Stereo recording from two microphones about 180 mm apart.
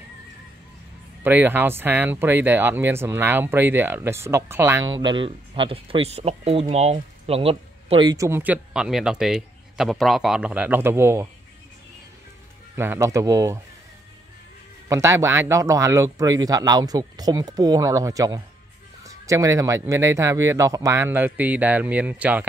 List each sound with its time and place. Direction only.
1.2 s speech: 10° right (ahead or behind)
12.7 s speech: 15° right (ahead or behind)
14.9 s speech: 15° right (ahead or behind)